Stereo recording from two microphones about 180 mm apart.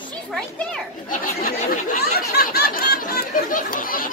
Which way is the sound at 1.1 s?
45° left (ahead or behind).